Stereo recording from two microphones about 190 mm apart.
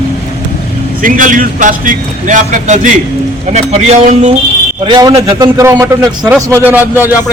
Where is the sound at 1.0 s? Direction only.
45° right (ahead or behind).